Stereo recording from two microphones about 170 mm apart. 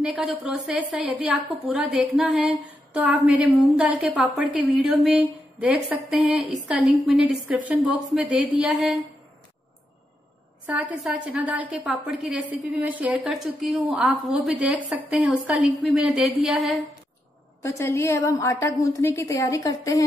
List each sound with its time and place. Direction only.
0.0 s a woman's voice: 5° right (ahead or behind)
10.7 s a woman's voice: 10° right (ahead or behind)
17.6 s a woman's voice: 15° left (ahead or behind)